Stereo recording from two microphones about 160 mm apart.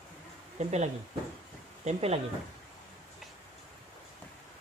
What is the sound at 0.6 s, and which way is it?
Speech, 45° right (ahead or behind).